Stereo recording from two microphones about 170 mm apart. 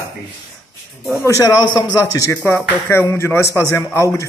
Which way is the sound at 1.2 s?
20° left (ahead or behind).